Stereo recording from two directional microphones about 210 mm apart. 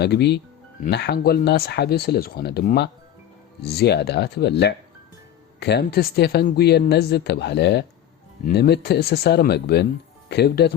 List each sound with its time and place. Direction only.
0.0 s speech: 55° left (ahead or behind)